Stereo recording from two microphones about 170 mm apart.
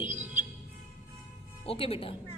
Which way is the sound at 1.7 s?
35° left (ahead or behind).